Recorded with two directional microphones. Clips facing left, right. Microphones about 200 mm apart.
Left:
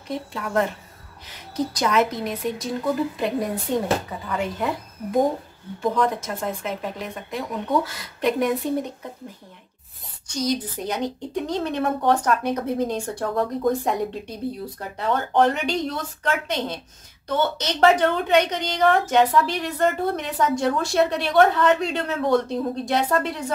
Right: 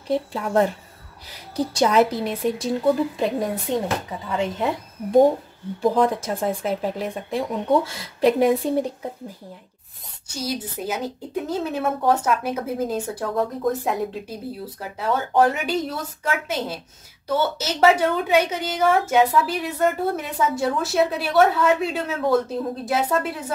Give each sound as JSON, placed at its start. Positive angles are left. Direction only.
{"t": 0.1, "sound": "speech", "side_deg": -30}
{"t": 4.3, "sound": "speech", "side_deg": -25}
{"t": 5.8, "sound": "speech", "side_deg": -30}
{"t": 10.2, "sound": "a woman's voice", "side_deg": -5}